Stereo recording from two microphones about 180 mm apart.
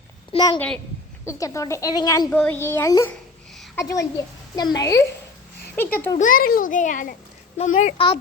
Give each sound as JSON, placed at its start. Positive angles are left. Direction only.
{"t": 0.3, "sound": "speech", "side_deg": 25}
{"t": 2.3, "sound": "a child's voice", "side_deg": 10}
{"t": 6.1, "sound": "a child's voice", "side_deg": 50}
{"t": 7.9, "sound": "speech", "side_deg": 30}